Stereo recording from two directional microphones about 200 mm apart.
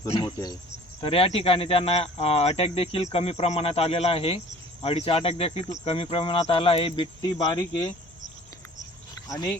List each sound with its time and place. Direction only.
0.1 s speech: 25° left (ahead or behind)
9.3 s speech: 15° left (ahead or behind)